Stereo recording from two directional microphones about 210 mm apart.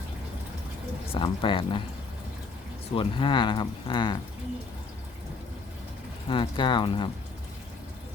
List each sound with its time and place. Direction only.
1.1 s speech: 25° left (ahead or behind)
2.9 s speech: 25° left (ahead or behind)
6.2 s speech: 25° left (ahead or behind)